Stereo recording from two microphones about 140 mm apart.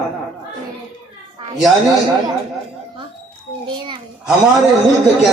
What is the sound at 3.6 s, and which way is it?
Speech, 35° right (ahead or behind).